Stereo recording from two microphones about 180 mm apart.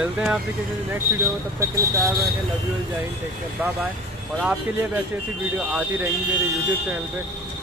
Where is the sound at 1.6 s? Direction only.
15° right (ahead or behind).